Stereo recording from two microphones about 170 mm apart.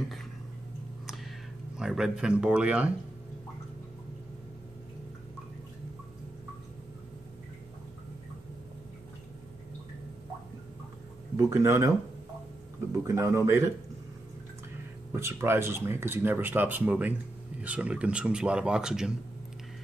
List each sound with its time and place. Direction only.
1.8 s speech: 5° right (ahead or behind)
11.3 s speech: 15° right (ahead or behind)
13.0 s speech: 15° right (ahead or behind)
15.1 s speech: 15° right (ahead or behind)